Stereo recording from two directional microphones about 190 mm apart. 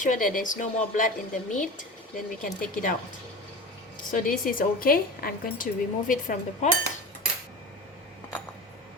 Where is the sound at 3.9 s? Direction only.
45° left (ahead or behind).